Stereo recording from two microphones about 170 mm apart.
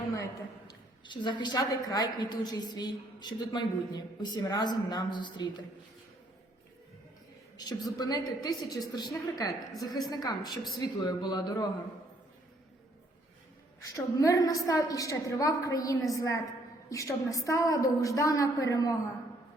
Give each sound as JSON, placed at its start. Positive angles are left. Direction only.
{"t": 0.7, "sound": "a woman's voice", "side_deg": 25}
{"t": 7.5, "sound": "a woman's voice", "side_deg": 25}
{"t": 13.8, "sound": "a woman's voice", "side_deg": 20}